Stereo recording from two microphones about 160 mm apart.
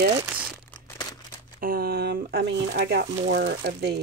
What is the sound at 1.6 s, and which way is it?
Speech, 65° right (ahead or behind).